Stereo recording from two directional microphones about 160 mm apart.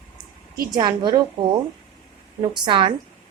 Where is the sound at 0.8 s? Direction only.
25° right (ahead or behind).